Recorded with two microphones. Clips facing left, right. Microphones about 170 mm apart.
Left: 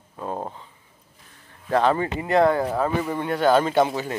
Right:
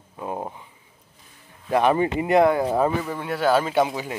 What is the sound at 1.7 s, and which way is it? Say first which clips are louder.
Speech: right 1 dB; 15° right (ahead or behind).